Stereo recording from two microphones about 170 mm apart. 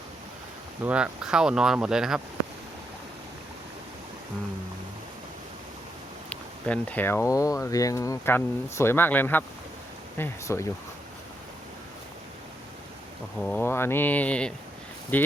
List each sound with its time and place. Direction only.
0.9 s speech: 5° right (ahead or behind)
6.3 s speech: 10° left (ahead or behind)
13.4 s speech: 10° left (ahead or behind)